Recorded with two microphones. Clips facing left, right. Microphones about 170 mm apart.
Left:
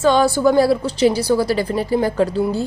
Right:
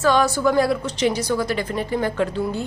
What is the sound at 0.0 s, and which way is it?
A woman's voice, 30° left (ahead or behind).